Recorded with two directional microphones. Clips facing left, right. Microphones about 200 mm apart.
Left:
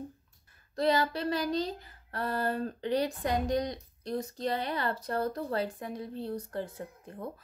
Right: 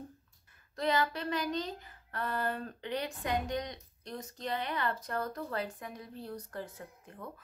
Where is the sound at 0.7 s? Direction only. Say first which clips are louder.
Left 4 dB; 35° left (ahead or behind).